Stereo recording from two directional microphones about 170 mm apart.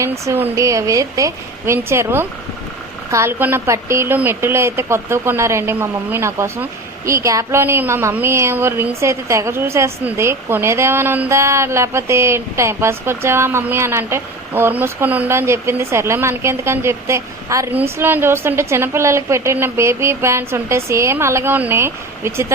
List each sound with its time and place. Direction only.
0.0 s a woman's voice: 15° right (ahead or behind)